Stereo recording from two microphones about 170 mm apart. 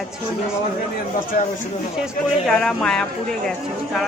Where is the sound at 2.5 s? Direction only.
5° left (ahead or behind).